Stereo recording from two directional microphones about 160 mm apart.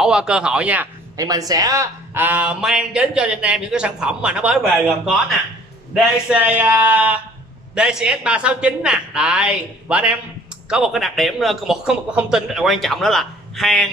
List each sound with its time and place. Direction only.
0.0 s a man's voice: 5° right (ahead or behind)
1.1 s a man's voice: 25° right (ahead or behind); by 13.8 s centre (ahead or behind)